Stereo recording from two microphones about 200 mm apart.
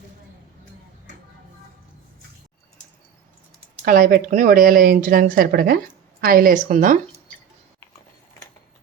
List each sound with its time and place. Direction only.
3.8 s speech: 45° right (ahead or behind)